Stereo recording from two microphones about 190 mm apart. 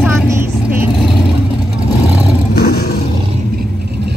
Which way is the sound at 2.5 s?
55° left (ahead or behind).